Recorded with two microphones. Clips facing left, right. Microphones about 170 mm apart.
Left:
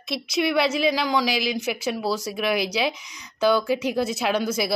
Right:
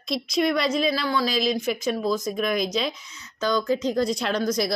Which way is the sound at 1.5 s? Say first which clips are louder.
Right 1 dB; 10° left (ahead or behind).